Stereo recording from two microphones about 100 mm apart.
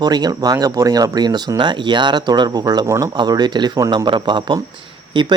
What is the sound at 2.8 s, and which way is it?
Speech, 30° right (ahead or behind).